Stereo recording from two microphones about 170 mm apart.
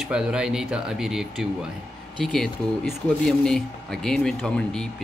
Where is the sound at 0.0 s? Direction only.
5° right (ahead or behind).